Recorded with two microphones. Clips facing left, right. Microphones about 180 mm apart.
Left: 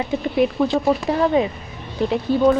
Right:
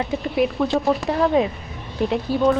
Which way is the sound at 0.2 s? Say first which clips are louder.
Left 3 dB; centre (ahead or behind).